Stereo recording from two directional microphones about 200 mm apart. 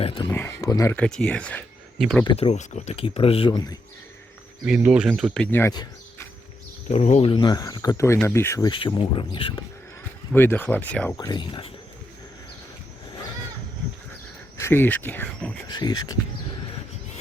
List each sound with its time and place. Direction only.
0.0 s speech: 30° left (ahead or behind)
0.3 s speech: 10° left (ahead or behind)
0.9 s speech: 5° left (ahead or behind)
2.2 s speech: 30° left (ahead or behind)
4.6 s speech: 5° right (ahead or behind); by 6.2 s 15° left (ahead or behind)
6.9 s speech: 35° left (ahead or behind)
10.3 s speech: 10° left (ahead or behind)
11.3 s speech: 25° left (ahead or behind)
14.6 s speech: 10° left (ahead or behind)
15.7 s speech: 20° left (ahead or behind)